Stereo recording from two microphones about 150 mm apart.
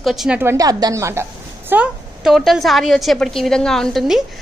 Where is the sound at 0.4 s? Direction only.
20° right (ahead or behind).